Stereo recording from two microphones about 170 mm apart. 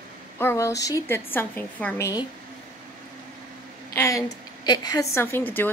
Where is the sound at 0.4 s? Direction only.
15° left (ahead or behind).